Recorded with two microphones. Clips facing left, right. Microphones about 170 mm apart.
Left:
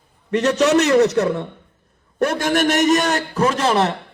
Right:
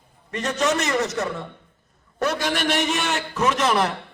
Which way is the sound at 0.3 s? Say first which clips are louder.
Left 7 dB; 70° left (ahead or behind).